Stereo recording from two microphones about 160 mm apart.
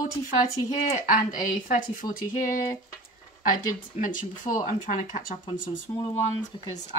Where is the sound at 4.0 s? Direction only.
55° left (ahead or behind).